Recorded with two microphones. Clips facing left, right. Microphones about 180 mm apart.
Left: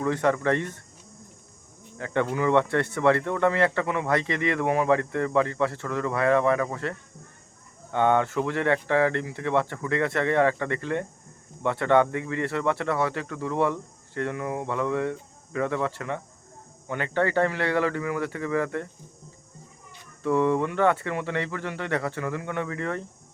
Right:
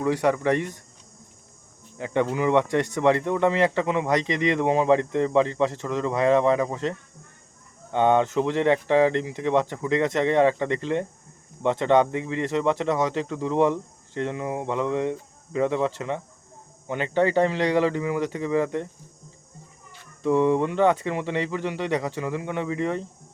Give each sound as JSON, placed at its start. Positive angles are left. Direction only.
{"t": 0.0, "sound": "speech", "side_deg": -10}
{"t": 2.0, "sound": "speech", "side_deg": -15}
{"t": 7.9, "sound": "speech", "side_deg": -20}
{"t": 20.2, "sound": "speech", "side_deg": -15}